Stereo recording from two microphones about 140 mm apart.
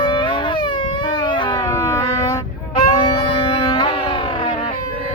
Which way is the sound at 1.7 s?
25° left (ahead or behind).